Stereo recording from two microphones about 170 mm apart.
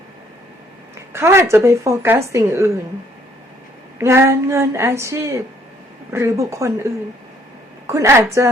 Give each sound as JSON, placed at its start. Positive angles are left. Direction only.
{"t": 1.1, "sound": "speech", "side_deg": -15}
{"t": 3.9, "sound": "speech", "side_deg": -15}
{"t": 7.9, "sound": "speech", "side_deg": -15}